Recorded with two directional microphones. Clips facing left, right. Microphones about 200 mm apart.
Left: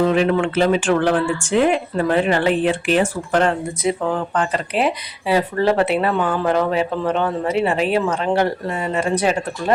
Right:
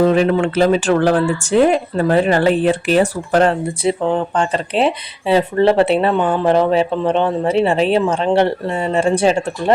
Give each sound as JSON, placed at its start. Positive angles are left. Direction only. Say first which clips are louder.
{"t": 0.0, "sound": "speech", "louder": "right 3 dB", "side_deg": -40}